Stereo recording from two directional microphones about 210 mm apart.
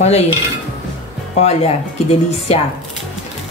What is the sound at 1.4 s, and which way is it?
A woman's voice, 30° left (ahead or behind).